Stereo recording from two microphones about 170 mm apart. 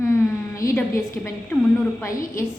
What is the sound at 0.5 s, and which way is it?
A woman's voice, 15° left (ahead or behind).